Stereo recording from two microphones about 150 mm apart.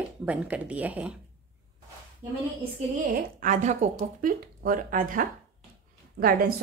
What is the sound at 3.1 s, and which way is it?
Speech, 60° right (ahead or behind).